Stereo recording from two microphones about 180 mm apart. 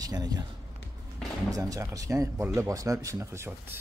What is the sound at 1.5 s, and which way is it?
Speech, 20° right (ahead or behind).